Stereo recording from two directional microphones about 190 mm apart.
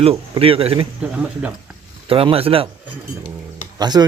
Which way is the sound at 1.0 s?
5° right (ahead or behind).